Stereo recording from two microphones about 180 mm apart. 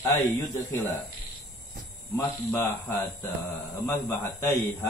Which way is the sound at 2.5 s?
10° left (ahead or behind).